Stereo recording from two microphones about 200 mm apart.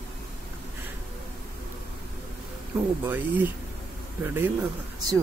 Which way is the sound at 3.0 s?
10° right (ahead or behind).